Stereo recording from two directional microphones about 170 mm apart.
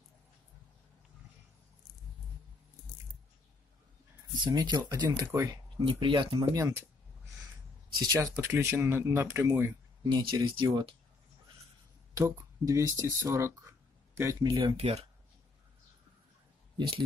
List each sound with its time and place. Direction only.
4.4 s speech: 25° right (ahead or behind)
5.9 s speech: 30° right (ahead or behind)
6.6 s speech: 15° right (ahead or behind)
7.9 s speech: 25° right (ahead or behind)
10.0 s speech: 25° right (ahead or behind)
12.1 s speech: 20° right (ahead or behind); by 15.0 s 35° right (ahead or behind)